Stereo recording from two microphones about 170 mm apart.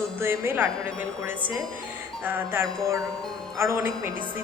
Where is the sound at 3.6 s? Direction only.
15° right (ahead or behind).